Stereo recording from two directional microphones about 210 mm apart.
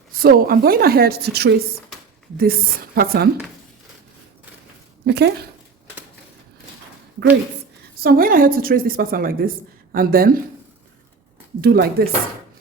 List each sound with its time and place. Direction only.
0.1 s a woman's voice: 45° right (ahead or behind)
5.0 s a woman's voice: 50° right (ahead or behind)
8.0 s a woman's voice: 45° right (ahead or behind)
11.6 s a woman's voice: 45° right (ahead or behind)